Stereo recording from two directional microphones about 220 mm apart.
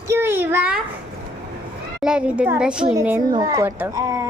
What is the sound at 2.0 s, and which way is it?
A woman's voice, 5° right (ahead or behind).